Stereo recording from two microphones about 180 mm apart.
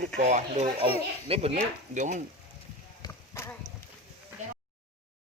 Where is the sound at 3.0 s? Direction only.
15° left (ahead or behind).